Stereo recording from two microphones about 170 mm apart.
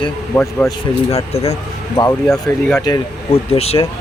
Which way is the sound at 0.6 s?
15° left (ahead or behind).